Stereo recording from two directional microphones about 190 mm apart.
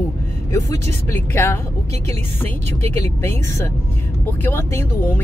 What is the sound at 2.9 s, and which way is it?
Speech, 15° left (ahead or behind).